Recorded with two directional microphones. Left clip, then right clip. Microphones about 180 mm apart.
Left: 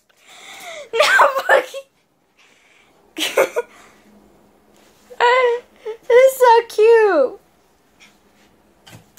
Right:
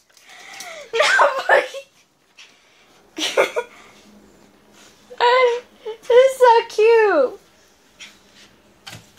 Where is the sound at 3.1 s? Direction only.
35° left (ahead or behind).